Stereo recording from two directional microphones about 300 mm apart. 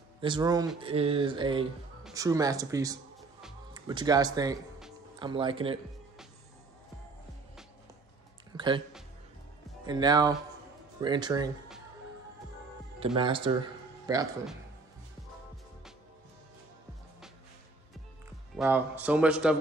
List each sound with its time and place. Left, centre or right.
0.2 s speech: centre
8.5 s speech: centre
9.8 s speech: centre
13.0 s speech: centre
18.6 s speech: centre